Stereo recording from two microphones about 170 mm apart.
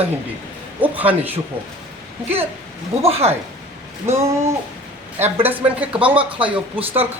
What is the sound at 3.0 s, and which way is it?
Speech, 35° right (ahead or behind).